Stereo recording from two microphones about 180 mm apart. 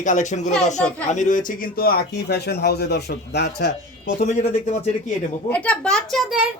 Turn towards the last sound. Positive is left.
turn(degrees=0)  # may be behind; listen again after turning